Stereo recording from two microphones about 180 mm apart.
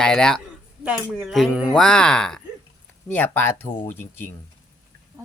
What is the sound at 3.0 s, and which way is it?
Speech, 10° left (ahead or behind).